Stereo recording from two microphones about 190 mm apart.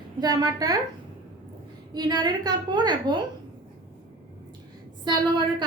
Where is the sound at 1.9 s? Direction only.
20° right (ahead or behind).